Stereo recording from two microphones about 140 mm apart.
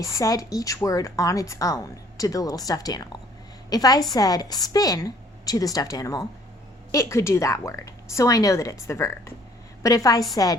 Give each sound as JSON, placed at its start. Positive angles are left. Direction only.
{"t": 0.0, "sound": "a woman's voice", "side_deg": 20}